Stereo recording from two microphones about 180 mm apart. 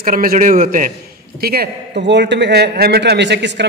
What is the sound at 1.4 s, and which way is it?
A man's voice, 60° right (ahead or behind).